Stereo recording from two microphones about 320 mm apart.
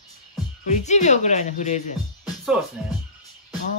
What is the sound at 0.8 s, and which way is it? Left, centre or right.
Speech, left.